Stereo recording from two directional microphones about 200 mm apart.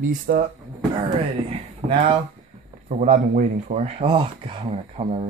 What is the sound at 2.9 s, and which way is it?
A man's voice, 40° right (ahead or behind).